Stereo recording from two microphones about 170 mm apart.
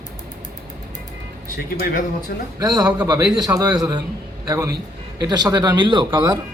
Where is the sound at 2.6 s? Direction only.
25° right (ahead or behind).